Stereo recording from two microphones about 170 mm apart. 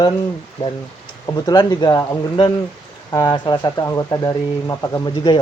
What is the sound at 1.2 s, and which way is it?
Speech, 25° left (ahead or behind).